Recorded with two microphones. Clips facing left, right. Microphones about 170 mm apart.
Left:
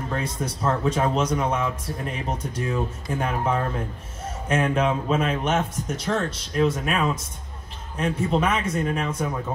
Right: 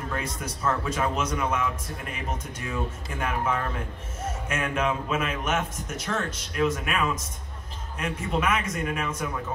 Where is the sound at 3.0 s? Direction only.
30° left (ahead or behind).